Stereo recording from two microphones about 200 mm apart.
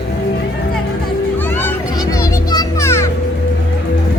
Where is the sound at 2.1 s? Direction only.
20° left (ahead or behind).